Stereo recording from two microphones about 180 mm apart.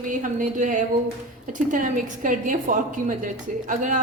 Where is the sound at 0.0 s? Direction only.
45° right (ahead or behind).